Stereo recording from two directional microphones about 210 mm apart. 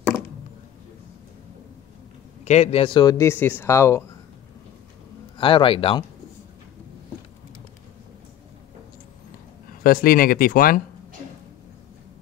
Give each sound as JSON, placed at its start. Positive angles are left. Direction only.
{"t": 2.4, "sound": "speech", "side_deg": 30}
{"t": 5.4, "sound": "speech", "side_deg": 25}
{"t": 9.8, "sound": "speech", "side_deg": 45}